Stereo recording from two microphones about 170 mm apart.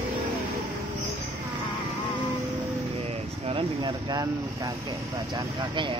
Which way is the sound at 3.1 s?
30° right (ahead or behind).